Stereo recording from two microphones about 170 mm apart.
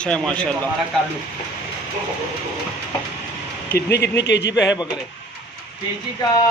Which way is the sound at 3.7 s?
75° left (ahead or behind).